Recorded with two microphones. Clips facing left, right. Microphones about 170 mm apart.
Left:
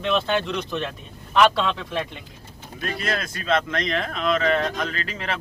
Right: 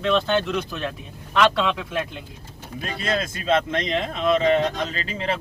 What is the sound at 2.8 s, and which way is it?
Speech, 25° right (ahead or behind).